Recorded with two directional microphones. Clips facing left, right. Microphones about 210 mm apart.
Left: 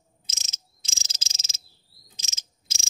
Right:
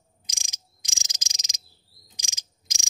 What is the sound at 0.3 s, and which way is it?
Cricket, 15° right (ahead or behind).